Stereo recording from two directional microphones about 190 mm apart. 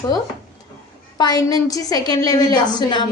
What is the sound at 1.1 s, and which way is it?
A child's voice, 20° left (ahead or behind).